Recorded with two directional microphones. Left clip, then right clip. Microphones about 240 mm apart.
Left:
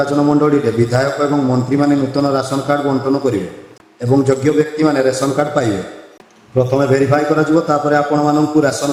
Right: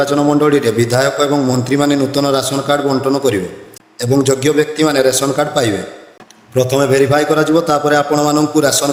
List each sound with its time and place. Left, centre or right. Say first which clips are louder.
0.0 s a man's voice: right 1 dB; right